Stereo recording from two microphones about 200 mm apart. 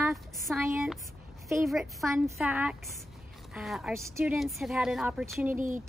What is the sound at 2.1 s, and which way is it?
Speech, 15° right (ahead or behind).